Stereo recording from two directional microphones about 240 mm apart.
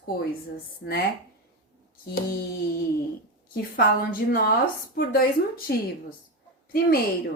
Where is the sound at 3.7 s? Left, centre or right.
Left.